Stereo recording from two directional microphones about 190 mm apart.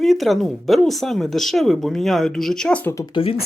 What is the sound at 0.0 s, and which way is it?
Speech, centre (ahead or behind).